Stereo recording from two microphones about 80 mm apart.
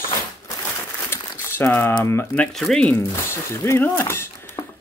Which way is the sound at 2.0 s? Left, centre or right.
Left.